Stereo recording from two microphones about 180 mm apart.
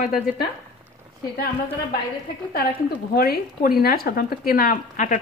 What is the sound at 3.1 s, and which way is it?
Speech, 55° left (ahead or behind).